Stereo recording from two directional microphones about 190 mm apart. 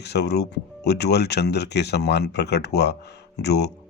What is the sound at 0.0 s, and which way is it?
Speech, 60° left (ahead or behind).